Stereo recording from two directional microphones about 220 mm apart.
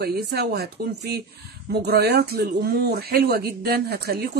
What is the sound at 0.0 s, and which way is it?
Speech, 50° right (ahead or behind).